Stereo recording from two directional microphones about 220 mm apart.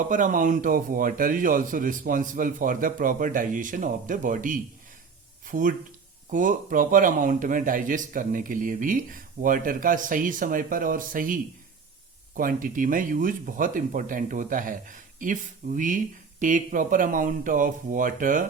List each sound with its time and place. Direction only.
0.1 s speech: 35° right (ahead or behind)
12.4 s speech: 40° right (ahead or behind)